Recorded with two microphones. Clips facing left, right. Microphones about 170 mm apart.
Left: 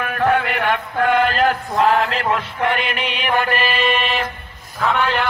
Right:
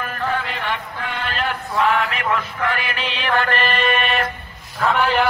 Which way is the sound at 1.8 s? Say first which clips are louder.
Left 2 dB; 35° left (ahead or behind).